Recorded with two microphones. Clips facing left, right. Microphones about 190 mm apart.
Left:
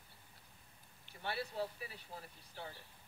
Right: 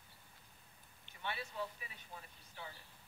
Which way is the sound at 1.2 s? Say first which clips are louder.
Left 3 dB; 35° left (ahead or behind).